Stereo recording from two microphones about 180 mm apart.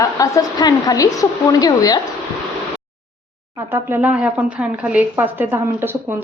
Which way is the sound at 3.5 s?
10° right (ahead or behind).